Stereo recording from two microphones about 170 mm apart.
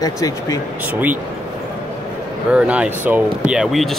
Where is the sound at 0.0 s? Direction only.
20° left (ahead or behind).